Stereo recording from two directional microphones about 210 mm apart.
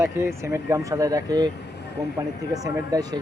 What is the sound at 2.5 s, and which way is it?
Speech, 15° right (ahead or behind).